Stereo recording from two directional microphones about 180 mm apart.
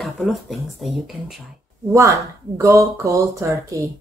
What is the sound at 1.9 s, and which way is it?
Speech, 15° right (ahead or behind).